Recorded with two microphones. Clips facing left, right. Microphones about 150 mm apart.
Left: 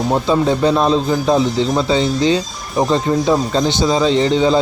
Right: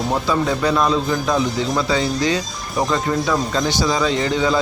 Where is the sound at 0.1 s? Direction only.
25° left (ahead or behind).